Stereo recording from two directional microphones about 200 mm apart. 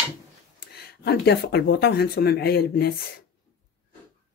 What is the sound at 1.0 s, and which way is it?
Speech, 55° left (ahead or behind).